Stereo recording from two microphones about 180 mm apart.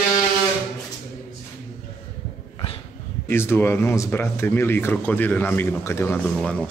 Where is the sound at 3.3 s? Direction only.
15° left (ahead or behind).